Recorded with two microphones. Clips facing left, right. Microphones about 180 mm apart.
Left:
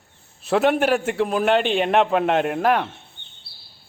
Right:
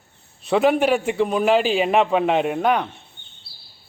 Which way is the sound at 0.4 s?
Centre (ahead or behind).